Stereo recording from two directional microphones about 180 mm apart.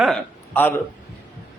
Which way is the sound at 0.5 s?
10° left (ahead or behind).